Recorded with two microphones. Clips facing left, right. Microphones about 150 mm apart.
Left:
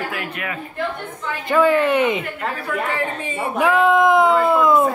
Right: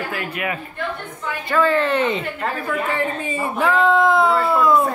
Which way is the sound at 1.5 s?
15° left (ahead or behind).